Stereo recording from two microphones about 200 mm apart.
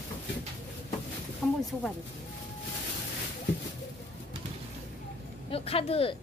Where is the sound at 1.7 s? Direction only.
5° left (ahead or behind).